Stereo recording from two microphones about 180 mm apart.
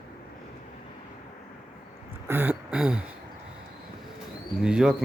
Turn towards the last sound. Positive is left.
turn(degrees=-5)  # may be behind; listen again after turning